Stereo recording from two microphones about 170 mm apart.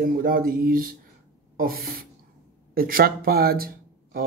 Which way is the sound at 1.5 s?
60° right (ahead or behind).